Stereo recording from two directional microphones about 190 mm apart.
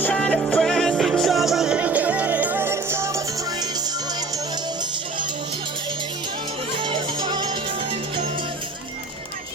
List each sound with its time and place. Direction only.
0.0 s music: 5° left (ahead or behind); by 3.7 s 15° right (ahead or behind)
6.7 s music: 25° right (ahead or behind)